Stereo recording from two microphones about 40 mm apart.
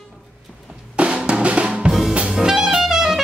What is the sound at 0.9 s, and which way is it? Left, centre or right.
Drum, right.